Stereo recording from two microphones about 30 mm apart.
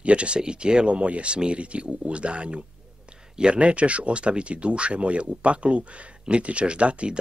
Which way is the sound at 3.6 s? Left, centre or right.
Right.